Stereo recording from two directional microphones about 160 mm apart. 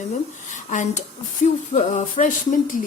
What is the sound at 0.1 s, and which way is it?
Speech, 50° left (ahead or behind).